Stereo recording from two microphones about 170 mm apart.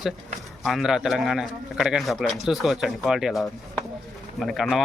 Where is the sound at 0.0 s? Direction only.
Centre (ahead or behind).